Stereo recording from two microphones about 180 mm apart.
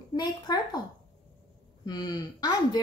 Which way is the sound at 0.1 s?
20° left (ahead or behind).